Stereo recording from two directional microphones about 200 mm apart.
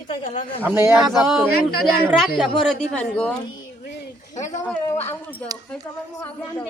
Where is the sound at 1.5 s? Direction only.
50° left (ahead or behind).